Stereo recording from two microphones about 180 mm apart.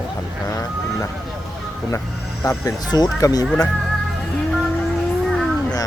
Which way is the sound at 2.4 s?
15° left (ahead or behind).